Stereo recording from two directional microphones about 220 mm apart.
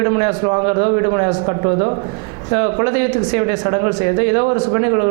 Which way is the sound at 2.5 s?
20° right (ahead or behind).